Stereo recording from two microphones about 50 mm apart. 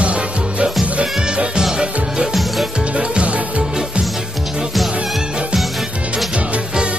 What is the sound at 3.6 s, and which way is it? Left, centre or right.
Music, centre.